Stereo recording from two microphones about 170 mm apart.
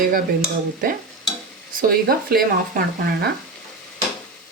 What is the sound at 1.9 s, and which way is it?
Speech, 60° right (ahead or behind).